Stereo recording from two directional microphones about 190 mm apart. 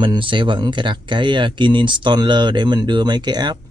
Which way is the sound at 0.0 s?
25° right (ahead or behind).